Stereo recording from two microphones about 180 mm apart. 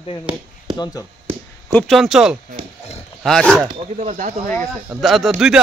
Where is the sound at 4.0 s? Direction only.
40° right (ahead or behind).